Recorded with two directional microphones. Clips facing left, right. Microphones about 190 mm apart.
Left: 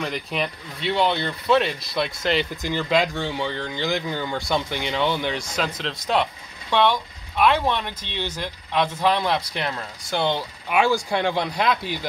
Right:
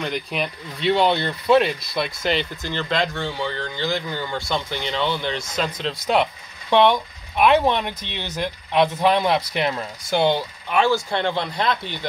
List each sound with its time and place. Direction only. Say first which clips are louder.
0.0 s speech: right 1 dB; centre (ahead or behind)
0.8 s speech: right 3 dB; 20° right (ahead or behind); by 2.4 s centre (ahead or behind)
2.5 s speech: left 3 dB; 15° left (ahead or behind)
6.7 s speech: right 4 dB; 20° right (ahead or behind)
10.7 s speech: right 1 dB; 15° left (ahead or behind)